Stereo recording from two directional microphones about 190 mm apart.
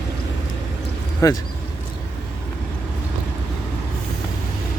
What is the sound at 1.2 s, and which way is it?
Speech, 15° left (ahead or behind).